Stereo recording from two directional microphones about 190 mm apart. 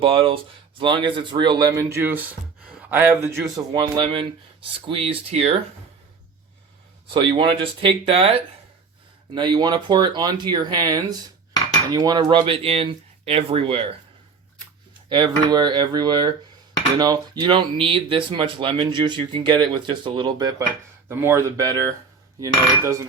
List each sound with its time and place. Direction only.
0.0 s speech: 30° right (ahead or behind)
7.1 s speech: 25° right (ahead or behind)
15.1 s speech: 25° right (ahead or behind)